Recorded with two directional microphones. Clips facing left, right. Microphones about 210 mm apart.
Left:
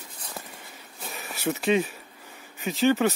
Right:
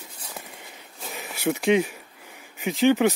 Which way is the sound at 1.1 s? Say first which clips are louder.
Right 3 dB; 15° right (ahead or behind).